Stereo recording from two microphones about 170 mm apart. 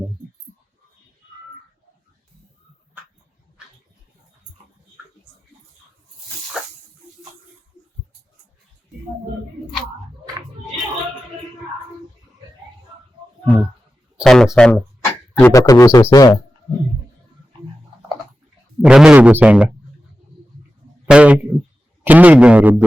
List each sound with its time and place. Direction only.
14.2 s speech: centre (ahead or behind)
15.4 s speech: 15° left (ahead or behind)
18.8 s speech: 5° right (ahead or behind)
21.1 s speech: 5° right (ahead or behind)